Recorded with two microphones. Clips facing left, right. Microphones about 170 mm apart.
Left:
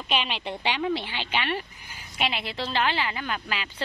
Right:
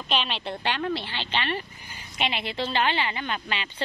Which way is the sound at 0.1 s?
10° left (ahead or behind).